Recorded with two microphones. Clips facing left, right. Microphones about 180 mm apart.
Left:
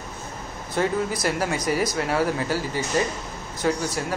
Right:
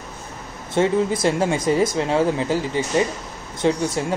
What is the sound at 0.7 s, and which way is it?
Speech, 25° right (ahead or behind).